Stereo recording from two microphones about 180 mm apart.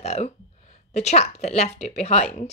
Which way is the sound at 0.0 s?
40° left (ahead or behind).